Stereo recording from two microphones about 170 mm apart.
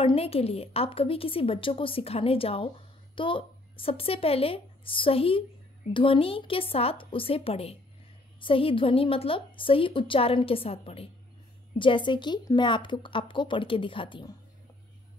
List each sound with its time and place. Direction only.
0.0 s a woman's voice: 35° left (ahead or behind)